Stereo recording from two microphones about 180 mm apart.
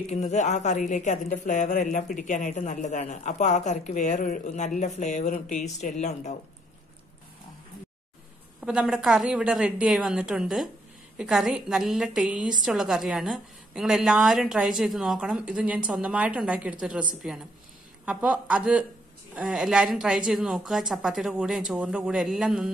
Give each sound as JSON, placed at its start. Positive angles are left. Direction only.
{"t": 0.0, "sound": "a woman's voice", "side_deg": 40}
{"t": 8.5, "sound": "a woman's voice", "side_deg": -5}